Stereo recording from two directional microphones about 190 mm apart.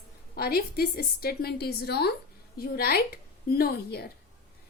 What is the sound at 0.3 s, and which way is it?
A woman's voice, 55° left (ahead or behind).